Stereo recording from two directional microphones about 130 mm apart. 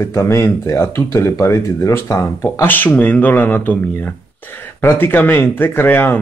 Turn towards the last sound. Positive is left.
turn(degrees=15)  # may be behind; listen again after turning